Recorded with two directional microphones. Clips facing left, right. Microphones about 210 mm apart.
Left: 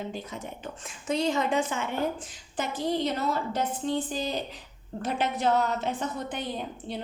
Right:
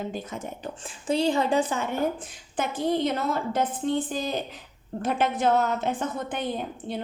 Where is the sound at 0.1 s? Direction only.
50° right (ahead or behind).